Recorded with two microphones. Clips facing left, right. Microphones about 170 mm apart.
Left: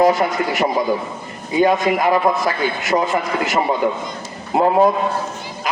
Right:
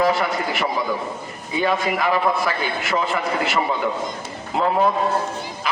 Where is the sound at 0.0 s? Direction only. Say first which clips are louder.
Left 5 dB; 45° left (ahead or behind).